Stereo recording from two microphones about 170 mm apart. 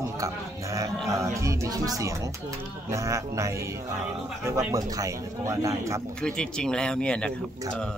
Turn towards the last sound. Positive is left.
turn(degrees=5)  # may be behind; listen again after turning